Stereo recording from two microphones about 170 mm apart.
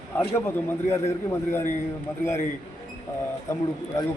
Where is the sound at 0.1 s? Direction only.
10° left (ahead or behind).